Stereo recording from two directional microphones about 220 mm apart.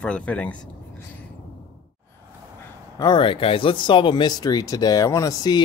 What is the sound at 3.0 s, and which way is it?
Speech, 20° left (ahead or behind).